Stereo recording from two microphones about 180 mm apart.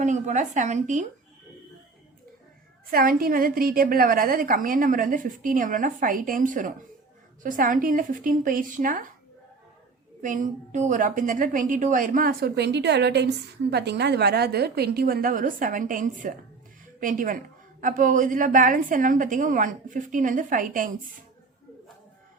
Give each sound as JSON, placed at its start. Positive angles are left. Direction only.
{"t": 0.0, "sound": "a woman's voice", "side_deg": -40}
{"t": 2.9, "sound": "a woman's voice", "side_deg": -55}
{"t": 10.2, "sound": "a woman's voice", "side_deg": -45}